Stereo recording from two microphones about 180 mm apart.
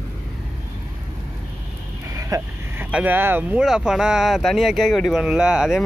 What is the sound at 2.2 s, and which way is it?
Speech, 15° right (ahead or behind).